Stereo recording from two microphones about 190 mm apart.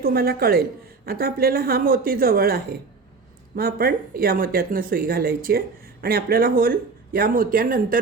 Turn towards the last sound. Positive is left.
turn(degrees=-45)  # may be behind; listen again after turning